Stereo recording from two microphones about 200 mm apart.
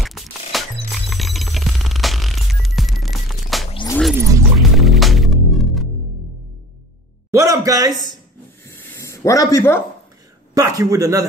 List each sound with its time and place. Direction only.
0.0 s music: centre (ahead or behind)
4.1 s music: 15° right (ahead or behind)
4.6 s music: centre (ahead or behind)
7.2 s a man's voice: 15° right (ahead or behind)
8.8 s a sound: 15° left (ahead or behind)
10.5 s a man's voice: 15° right (ahead or behind)